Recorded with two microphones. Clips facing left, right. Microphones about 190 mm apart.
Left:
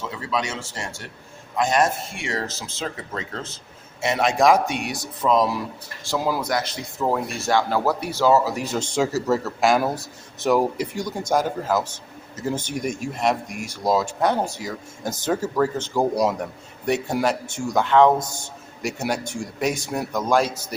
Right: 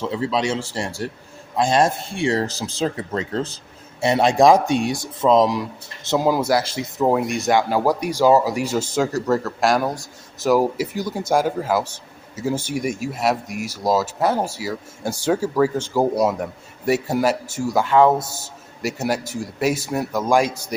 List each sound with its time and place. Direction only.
0.0 s speech: 30° right (ahead or behind); by 8.9 s 10° right (ahead or behind)
9.0 s a man's voice: centre (ahead or behind)